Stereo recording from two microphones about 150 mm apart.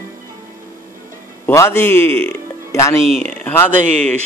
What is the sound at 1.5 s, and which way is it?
A man's voice, 15° left (ahead or behind).